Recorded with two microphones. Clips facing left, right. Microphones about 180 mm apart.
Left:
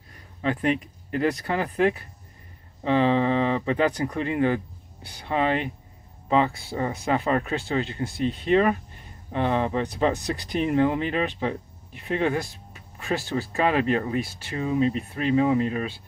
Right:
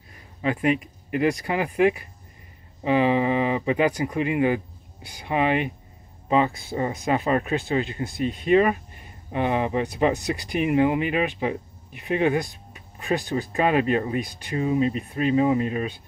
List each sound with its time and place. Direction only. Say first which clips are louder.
0.4 s speech: right 1 dB; 10° right (ahead or behind)